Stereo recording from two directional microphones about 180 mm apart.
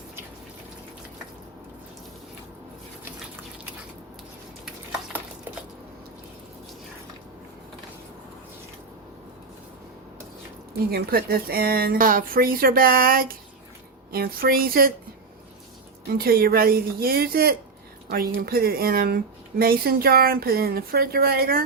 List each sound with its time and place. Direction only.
10.9 s a woman's voice: 55° right (ahead or behind)
16.0 s a woman's voice: 55° right (ahead or behind)